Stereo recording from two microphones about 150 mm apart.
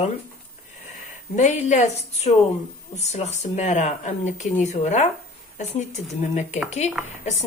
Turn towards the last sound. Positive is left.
turn(degrees=50)  # may be behind; listen again after turning